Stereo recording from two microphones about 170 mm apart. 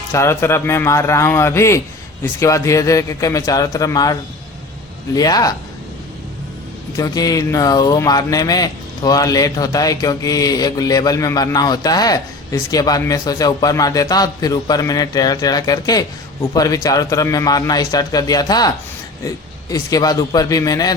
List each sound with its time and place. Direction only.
0.1 s a man's voice: 15° left (ahead or behind)
6.9 s speech: 20° left (ahead or behind)
19.7 s speech: 20° left (ahead or behind)